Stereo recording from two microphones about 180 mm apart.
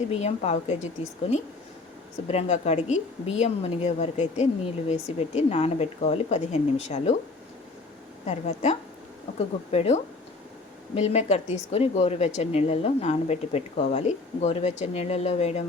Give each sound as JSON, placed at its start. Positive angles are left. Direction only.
{"t": 0.1, "sound": "a woman's voice", "side_deg": 35}
{"t": 2.2, "sound": "a woman's voice", "side_deg": 35}
{"t": 8.3, "sound": "a woman's voice", "side_deg": 40}